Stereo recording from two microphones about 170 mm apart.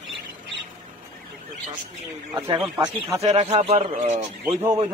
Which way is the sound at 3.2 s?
40° right (ahead or behind).